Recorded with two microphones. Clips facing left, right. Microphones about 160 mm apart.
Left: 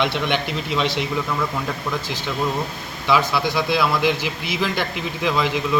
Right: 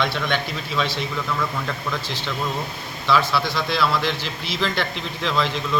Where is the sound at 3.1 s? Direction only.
15° left (ahead or behind).